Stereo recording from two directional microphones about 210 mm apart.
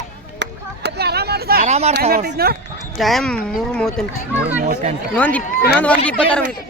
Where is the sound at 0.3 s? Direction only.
50° right (ahead or behind).